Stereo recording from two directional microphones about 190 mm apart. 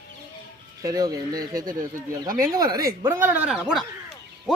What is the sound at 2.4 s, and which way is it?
Speech, 20° right (ahead or behind).